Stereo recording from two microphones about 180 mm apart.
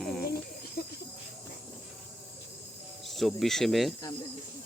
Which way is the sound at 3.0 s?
Centre (ahead or behind).